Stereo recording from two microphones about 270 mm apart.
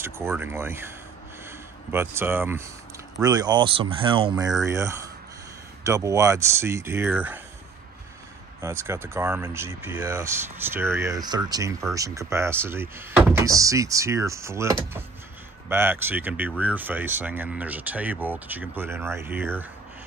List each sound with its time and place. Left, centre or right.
0.0 s speech: centre
8.5 s speech: centre